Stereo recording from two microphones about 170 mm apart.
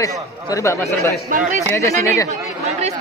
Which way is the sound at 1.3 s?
50° right (ahead or behind).